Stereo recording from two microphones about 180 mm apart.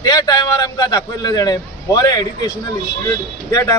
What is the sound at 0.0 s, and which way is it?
A man's voice, 20° left (ahead or behind).